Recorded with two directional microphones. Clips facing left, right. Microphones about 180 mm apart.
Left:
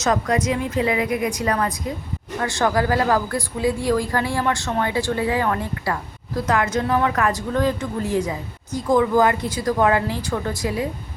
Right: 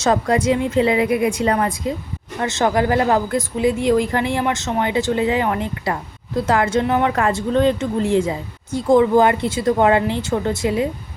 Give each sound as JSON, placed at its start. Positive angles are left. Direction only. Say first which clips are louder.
{"t": 0.0, "sound": "a woman's voice", "louder": "right 3 dB", "side_deg": -30}